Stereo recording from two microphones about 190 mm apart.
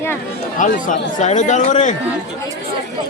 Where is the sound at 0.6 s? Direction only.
45° left (ahead or behind).